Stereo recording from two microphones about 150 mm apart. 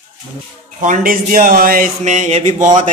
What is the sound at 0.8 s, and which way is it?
Speech, 60° right (ahead or behind).